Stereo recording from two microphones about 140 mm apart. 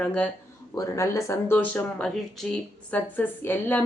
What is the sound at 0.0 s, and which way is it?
Speech, 5° left (ahead or behind).